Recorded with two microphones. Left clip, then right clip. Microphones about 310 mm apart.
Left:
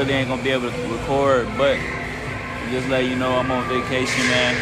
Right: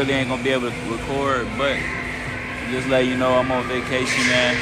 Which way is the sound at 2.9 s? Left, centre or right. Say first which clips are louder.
Right 3 dB; centre.